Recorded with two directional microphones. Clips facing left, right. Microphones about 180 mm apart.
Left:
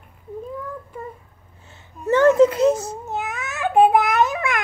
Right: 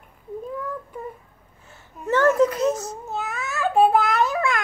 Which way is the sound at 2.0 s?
15° left (ahead or behind).